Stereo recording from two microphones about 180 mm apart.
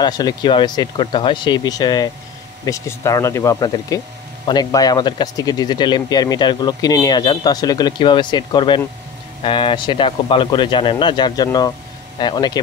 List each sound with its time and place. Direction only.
0.0 s speech: 20° left (ahead or behind)